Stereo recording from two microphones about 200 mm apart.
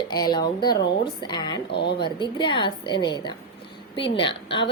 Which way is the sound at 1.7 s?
55° left (ahead or behind).